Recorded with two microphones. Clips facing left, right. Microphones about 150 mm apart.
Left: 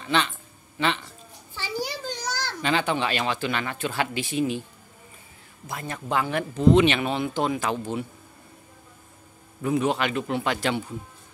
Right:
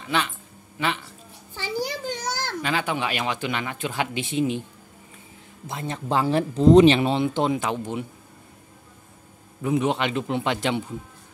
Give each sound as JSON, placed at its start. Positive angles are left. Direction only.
{"t": 0.0, "sound": "speech", "side_deg": -10}
{"t": 2.0, "sound": "a sound", "side_deg": -55}
{"t": 2.6, "sound": "speech", "side_deg": -5}
{"t": 5.7, "sound": "speech", "side_deg": -25}
{"t": 9.6, "sound": "speech", "side_deg": -20}